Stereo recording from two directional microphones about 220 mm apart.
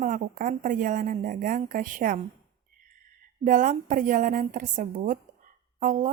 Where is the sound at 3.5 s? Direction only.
35° right (ahead or behind).